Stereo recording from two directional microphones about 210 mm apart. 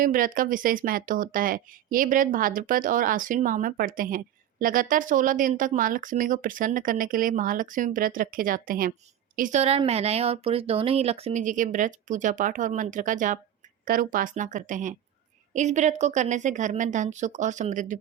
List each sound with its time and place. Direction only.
0.0 s speech: 40° right (ahead or behind)